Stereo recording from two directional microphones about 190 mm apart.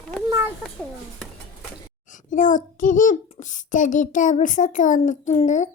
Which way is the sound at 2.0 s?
40° left (ahead or behind).